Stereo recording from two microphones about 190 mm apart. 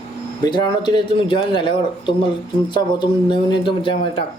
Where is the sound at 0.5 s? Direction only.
25° left (ahead or behind).